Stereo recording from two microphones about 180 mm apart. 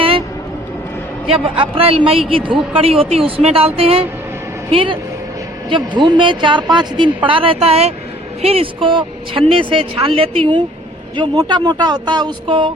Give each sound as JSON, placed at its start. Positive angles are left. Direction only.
{"t": 1.3, "sound": "speech", "side_deg": -30}